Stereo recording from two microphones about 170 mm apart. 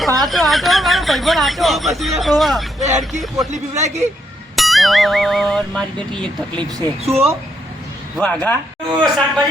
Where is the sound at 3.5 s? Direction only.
40° right (ahead or behind).